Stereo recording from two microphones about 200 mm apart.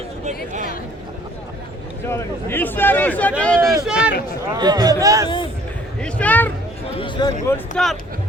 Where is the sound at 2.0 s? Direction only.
10° left (ahead or behind).